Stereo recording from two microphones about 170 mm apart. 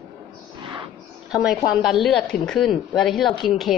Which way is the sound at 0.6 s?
30° right (ahead or behind).